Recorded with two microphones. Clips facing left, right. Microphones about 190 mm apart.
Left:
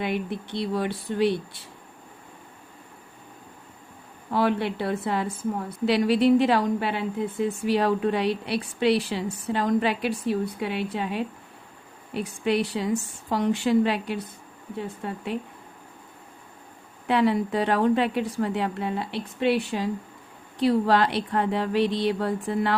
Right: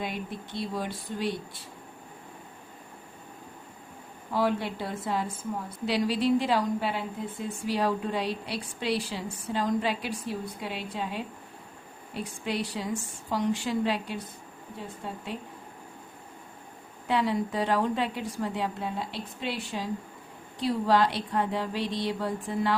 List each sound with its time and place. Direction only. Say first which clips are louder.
0.0 s speech: left 6 dB; 70° left (ahead or behind)
4.3 s a woman's voice: left 4 dB; 65° left (ahead or behind)
17.1 s a woman's voice: left 5 dB; 65° left (ahead or behind)